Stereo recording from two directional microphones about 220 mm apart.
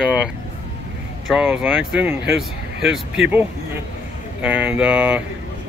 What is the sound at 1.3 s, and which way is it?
Speech, 5° right (ahead or behind).